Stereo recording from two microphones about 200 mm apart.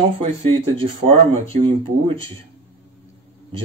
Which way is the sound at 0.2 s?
30° right (ahead or behind).